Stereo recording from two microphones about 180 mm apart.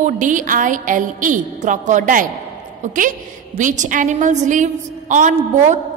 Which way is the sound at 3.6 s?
45° right (ahead or behind).